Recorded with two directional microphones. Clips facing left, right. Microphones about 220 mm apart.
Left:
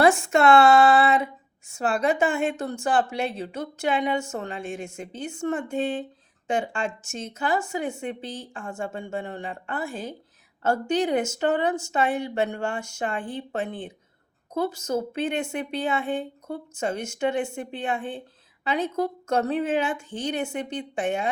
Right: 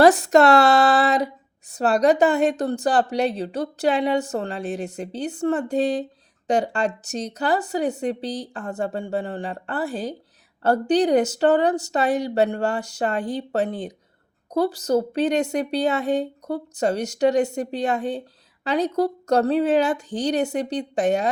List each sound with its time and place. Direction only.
0.0 s speech: 40° right (ahead or behind)